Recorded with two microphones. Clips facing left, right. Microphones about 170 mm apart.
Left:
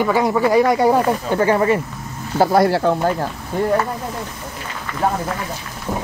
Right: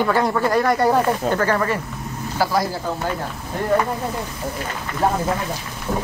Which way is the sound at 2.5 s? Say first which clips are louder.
Left 7 dB; 65° left (ahead or behind).